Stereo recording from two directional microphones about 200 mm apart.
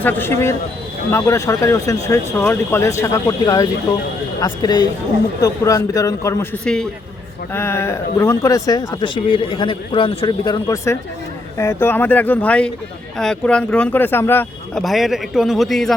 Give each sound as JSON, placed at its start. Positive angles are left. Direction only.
{"t": 0.0, "sound": "a man's voice", "side_deg": 10}
{"t": 14.8, "sound": "speech", "side_deg": 0}